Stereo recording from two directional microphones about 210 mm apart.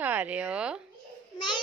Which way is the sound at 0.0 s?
5° right (ahead or behind).